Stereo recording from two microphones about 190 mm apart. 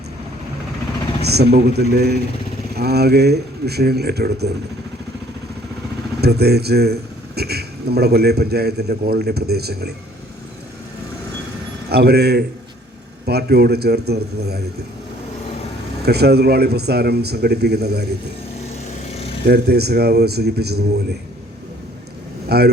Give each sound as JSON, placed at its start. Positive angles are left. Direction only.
{"t": 1.2, "sound": "a man's voice", "side_deg": -60}
{"t": 6.2, "sound": "a man's voice", "side_deg": -60}
{"t": 11.9, "sound": "a man's voice", "side_deg": -55}
{"t": 16.0, "sound": "a man's voice", "side_deg": -60}
{"t": 19.5, "sound": "a man's voice", "side_deg": -55}
{"t": 22.4, "sound": "a man's voice", "side_deg": -55}